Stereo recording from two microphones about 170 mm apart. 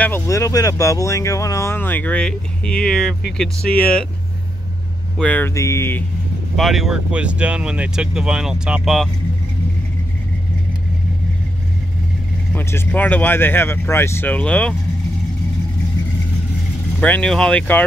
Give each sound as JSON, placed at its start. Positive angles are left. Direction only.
{"t": 0.0, "sound": "speech", "side_deg": 15}
{"t": 5.1, "sound": "speech", "side_deg": 10}
{"t": 6.5, "sound": "speech", "side_deg": 0}
{"t": 12.5, "sound": "speech", "side_deg": 10}
{"t": 17.0, "sound": "speech", "side_deg": 5}